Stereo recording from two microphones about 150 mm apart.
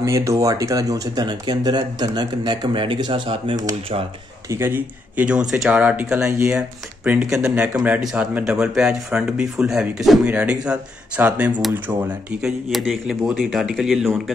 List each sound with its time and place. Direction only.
0.0 s speech: 20° right (ahead or behind)
4.5 s speech: 15° right (ahead or behind)
6.3 s speech: 15° right (ahead or behind)
7.1 s speech: 5° right (ahead or behind)